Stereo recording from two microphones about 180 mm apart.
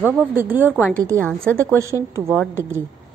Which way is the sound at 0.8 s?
5° left (ahead or behind).